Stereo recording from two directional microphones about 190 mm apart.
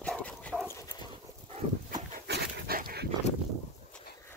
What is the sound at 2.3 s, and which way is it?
Dog, 50° right (ahead or behind).